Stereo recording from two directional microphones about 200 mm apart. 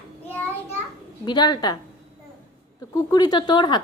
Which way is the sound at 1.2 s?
20° left (ahead or behind).